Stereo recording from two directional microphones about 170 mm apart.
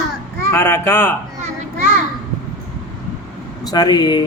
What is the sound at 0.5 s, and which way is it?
Speech, 15° left (ahead or behind).